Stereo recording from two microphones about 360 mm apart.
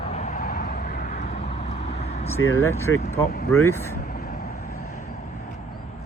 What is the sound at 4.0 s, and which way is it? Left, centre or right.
Vehicle, left.